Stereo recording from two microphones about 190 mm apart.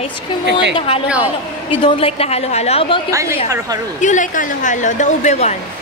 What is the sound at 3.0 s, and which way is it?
Speech, 15° right (ahead or behind).